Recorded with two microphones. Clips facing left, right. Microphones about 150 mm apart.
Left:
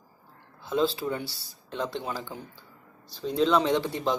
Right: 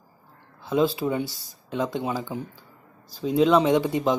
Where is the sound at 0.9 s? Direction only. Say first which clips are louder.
Right 5 dB; 15° right (ahead or behind).